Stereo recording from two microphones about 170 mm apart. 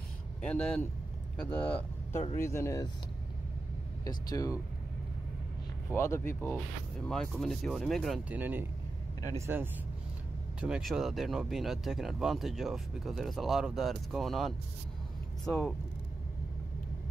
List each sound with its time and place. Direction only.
0.4 s speech: 5° left (ahead or behind)
4.0 s speech: 20° left (ahead or behind)
5.9 s speech: 15° left (ahead or behind)
7.1 s speech: 5° left (ahead or behind)
8.4 s speech: 10° right (ahead or behind)
10.6 s speech: centre (ahead or behind)